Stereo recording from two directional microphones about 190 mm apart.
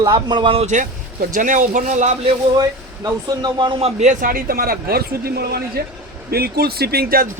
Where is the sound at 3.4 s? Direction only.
25° right (ahead or behind).